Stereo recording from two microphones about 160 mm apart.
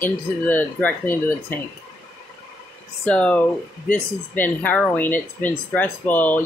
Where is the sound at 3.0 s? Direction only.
5° left (ahead or behind).